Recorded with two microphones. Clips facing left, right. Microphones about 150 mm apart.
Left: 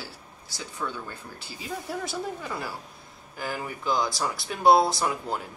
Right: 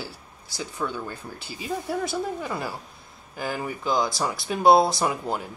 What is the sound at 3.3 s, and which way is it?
Speech, 15° right (ahead or behind).